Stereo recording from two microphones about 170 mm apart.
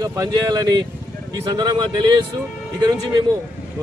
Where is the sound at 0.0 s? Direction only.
20° right (ahead or behind).